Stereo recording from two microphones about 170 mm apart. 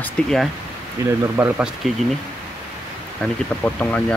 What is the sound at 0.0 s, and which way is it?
Speech, centre (ahead or behind).